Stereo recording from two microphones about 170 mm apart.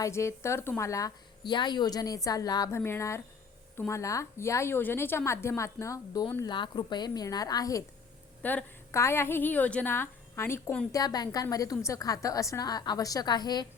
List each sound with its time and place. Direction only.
0.0 s a woman's voice: 15° left (ahead or behind)
6.4 s a woman's voice: 25° left (ahead or behind)
8.4 s a woman's voice: 10° left (ahead or behind)
10.9 s a woman's voice: 20° left (ahead or behind)